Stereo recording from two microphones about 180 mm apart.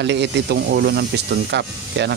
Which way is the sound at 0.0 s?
75° right (ahead or behind).